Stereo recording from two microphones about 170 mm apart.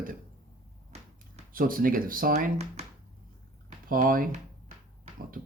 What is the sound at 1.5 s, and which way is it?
Speech, 55° right (ahead or behind).